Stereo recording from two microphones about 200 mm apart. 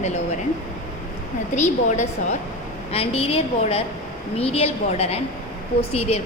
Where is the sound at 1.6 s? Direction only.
35° left (ahead or behind).